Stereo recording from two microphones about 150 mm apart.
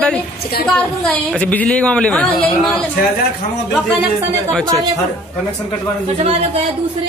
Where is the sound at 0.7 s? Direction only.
5° left (ahead or behind).